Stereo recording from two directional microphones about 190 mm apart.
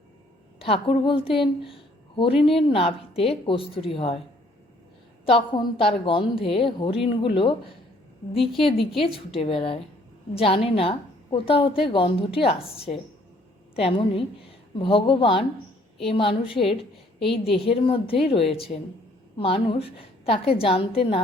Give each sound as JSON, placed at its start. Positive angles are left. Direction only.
{"t": 0.6, "sound": "a woman's voice", "side_deg": 30}
{"t": 5.2, "sound": "a woman's voice", "side_deg": 25}